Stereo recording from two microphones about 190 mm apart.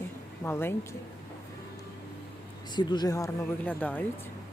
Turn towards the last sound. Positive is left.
turn(degrees=10)  # may be behind; listen again after turning